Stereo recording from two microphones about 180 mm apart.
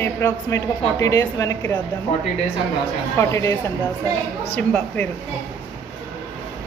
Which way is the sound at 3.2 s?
15° left (ahead or behind).